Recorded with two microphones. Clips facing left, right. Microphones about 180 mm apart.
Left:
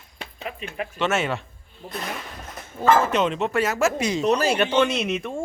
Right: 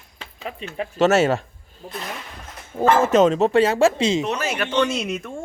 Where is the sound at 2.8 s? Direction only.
45° right (ahead or behind); by 4.2 s 25° right (ahead or behind).